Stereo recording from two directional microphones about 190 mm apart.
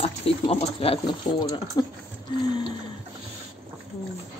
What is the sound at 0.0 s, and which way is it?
Speech, 30° left (ahead or behind).